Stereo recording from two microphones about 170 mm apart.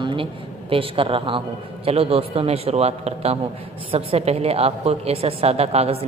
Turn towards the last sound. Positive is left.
turn(degrees=-35)  # may be behind; listen again after turning